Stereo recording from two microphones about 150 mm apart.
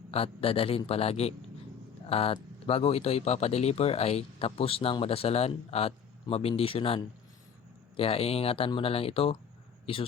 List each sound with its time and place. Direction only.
0.1 s a man's voice: 40° left (ahead or behind)